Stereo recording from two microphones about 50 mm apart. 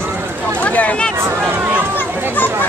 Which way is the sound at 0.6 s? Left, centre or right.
Left.